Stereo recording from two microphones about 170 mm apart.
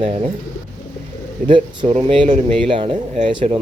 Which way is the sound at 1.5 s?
35° right (ahead or behind).